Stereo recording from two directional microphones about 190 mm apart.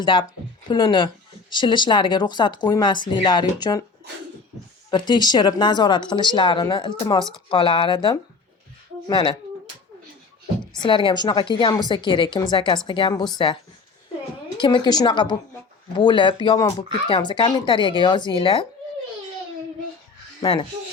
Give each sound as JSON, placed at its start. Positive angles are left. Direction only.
{"t": 0.0, "sound": "speech", "side_deg": 25}
{"t": 4.9, "sound": "speech", "side_deg": 25}
{"t": 10.8, "sound": "speech", "side_deg": 25}
{"t": 14.6, "sound": "speech", "side_deg": 20}
{"t": 20.4, "sound": "speech", "side_deg": 25}